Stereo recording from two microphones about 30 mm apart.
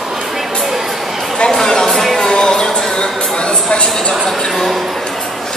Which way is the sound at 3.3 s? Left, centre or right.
Left.